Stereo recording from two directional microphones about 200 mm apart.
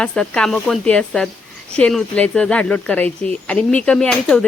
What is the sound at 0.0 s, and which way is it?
Speech, 5° left (ahead or behind).